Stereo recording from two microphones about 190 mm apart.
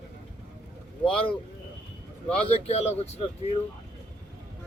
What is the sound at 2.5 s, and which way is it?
Speech, 35° left (ahead or behind).